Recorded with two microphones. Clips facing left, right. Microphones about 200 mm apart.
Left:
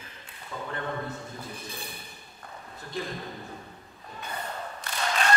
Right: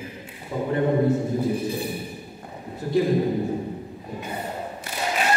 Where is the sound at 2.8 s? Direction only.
10° right (ahead or behind).